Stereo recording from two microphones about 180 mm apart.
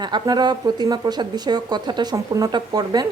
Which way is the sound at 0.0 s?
25° right (ahead or behind).